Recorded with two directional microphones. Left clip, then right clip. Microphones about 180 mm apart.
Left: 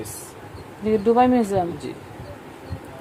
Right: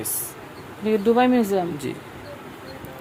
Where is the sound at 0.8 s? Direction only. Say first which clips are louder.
Left 1 dB; 10° left (ahead or behind).